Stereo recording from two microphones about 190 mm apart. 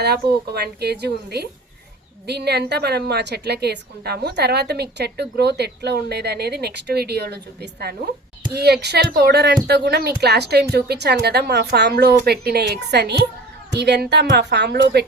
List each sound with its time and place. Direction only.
0.0 s a woman's voice: 55° right (ahead or behind)